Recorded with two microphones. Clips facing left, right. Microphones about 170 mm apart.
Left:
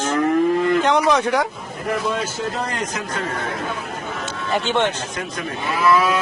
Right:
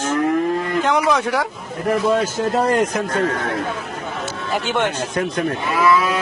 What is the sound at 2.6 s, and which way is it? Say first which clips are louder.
Speech: right 8 dB; 55° right (ahead or behind).